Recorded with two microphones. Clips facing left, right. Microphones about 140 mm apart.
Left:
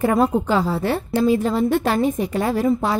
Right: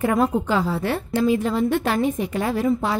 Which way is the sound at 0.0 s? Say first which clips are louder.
Left 2 dB; 35° left (ahead or behind).